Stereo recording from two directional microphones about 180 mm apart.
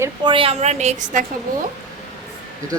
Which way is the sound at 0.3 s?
30° right (ahead or behind).